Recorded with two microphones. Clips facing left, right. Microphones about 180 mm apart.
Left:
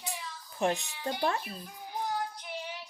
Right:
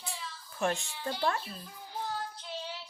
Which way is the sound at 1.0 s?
15° left (ahead or behind).